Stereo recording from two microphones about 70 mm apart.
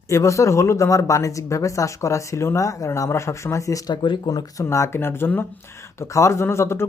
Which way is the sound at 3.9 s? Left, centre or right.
Left.